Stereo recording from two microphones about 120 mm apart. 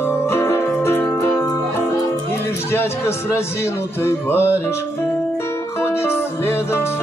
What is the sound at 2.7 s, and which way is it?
A man's voice, 20° left (ahead or behind).